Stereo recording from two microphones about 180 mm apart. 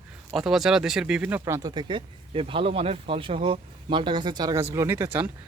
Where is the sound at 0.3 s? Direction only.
Centre (ahead or behind).